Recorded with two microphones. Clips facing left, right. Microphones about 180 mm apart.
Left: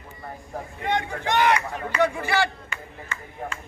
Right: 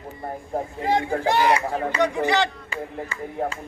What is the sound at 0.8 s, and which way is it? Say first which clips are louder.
Speech: right 4 dB; 30° right (ahead or behind).